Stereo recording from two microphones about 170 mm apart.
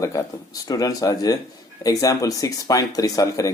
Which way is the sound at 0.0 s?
20° left (ahead or behind).